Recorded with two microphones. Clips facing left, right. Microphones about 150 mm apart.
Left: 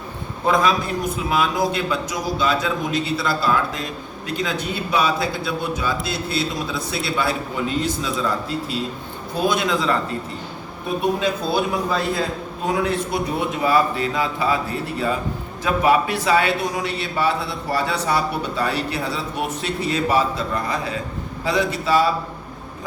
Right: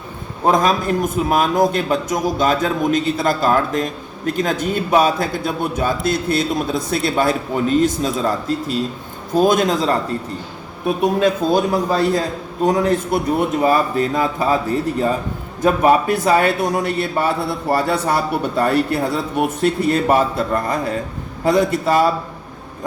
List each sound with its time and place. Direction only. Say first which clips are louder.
0.4 s a man's voice: right 3 dB; 45° right (ahead or behind)
11.2 s a man's voice: right 6 dB; 40° right (ahead or behind)